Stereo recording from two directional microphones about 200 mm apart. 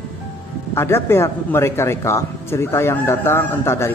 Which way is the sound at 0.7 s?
10° left (ahead or behind).